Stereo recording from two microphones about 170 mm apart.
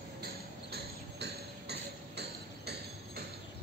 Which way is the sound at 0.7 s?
75° right (ahead or behind).